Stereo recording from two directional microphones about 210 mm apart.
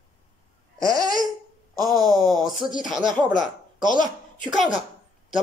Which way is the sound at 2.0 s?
Centre (ahead or behind).